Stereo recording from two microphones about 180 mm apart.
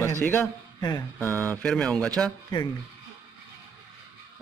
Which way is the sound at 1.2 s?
10° left (ahead or behind).